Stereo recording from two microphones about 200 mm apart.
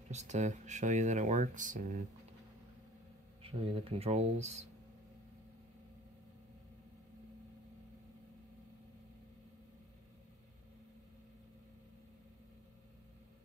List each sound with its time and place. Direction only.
0.1 s speech: 35° right (ahead or behind)
3.4 s speech: 30° right (ahead or behind)